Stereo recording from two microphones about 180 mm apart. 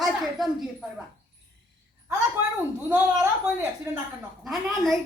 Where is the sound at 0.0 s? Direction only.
Centre (ahead or behind).